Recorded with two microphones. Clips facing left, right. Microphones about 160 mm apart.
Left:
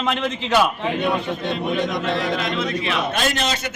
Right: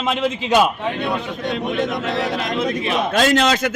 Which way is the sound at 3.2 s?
90° right.